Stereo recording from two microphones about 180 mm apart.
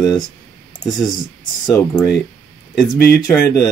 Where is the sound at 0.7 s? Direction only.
25° left (ahead or behind).